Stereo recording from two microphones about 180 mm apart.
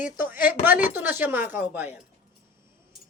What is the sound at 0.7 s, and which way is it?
Speech, 10° right (ahead or behind).